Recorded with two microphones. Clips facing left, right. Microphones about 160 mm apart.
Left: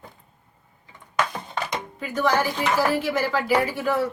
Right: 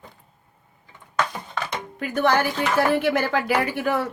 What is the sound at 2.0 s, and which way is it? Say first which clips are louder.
Speech: right 2 dB; 60° right (ahead or behind).